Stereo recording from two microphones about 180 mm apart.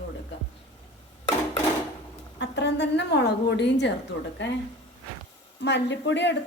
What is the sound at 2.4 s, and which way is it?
A woman's voice, 75° left (ahead or behind).